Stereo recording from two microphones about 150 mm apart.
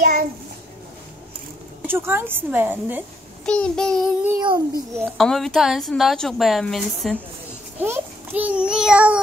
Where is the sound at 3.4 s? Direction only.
5° left (ahead or behind).